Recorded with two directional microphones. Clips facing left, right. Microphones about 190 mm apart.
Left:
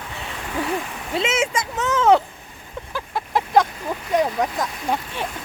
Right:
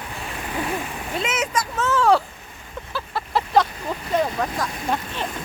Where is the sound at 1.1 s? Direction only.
25° left (ahead or behind).